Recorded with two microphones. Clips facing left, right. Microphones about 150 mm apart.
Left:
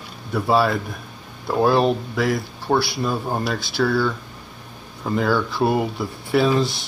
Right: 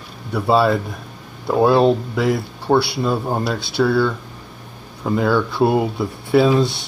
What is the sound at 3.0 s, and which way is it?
Speech, 20° right (ahead or behind).